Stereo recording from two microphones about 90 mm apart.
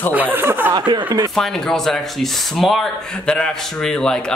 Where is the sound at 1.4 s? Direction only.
5° left (ahead or behind).